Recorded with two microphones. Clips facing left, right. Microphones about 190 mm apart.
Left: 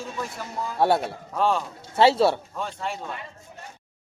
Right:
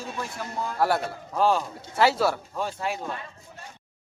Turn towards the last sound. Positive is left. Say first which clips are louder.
# right 2 dB
turn(degrees=-5)  # may be behind; listen again after turning